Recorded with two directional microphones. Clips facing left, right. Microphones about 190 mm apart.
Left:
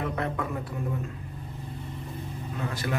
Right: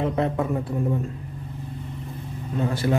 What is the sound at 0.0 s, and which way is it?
A man's voice, 25° right (ahead or behind).